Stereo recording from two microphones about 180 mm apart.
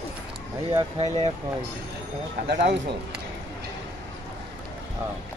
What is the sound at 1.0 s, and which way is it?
Speech, 35° right (ahead or behind).